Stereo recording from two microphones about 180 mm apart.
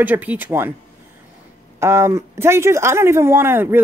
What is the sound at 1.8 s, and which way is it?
Speech, 15° right (ahead or behind).